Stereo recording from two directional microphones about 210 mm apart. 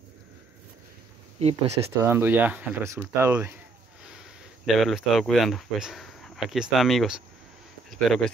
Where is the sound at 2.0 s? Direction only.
10° right (ahead or behind).